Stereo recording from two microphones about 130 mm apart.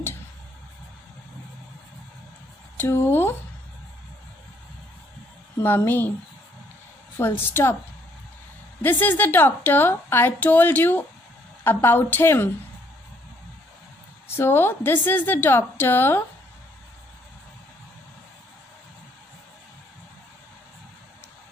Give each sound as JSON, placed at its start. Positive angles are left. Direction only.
{"t": 2.8, "sound": "a woman's voice", "side_deg": 15}
{"t": 5.6, "sound": "a woman's voice", "side_deg": 15}
{"t": 7.2, "sound": "a woman's voice", "side_deg": 20}
{"t": 8.8, "sound": "a woman's voice", "side_deg": 15}
{"t": 14.2, "sound": "a woman's voice", "side_deg": 20}